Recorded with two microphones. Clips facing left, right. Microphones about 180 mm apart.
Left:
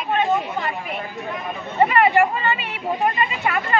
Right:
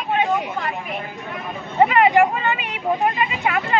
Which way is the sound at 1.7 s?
15° right (ahead or behind).